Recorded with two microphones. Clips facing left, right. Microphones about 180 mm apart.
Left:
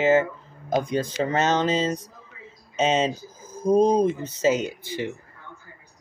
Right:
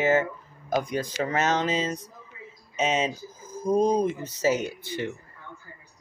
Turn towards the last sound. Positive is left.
turn(degrees=15)  # may be behind; listen again after turning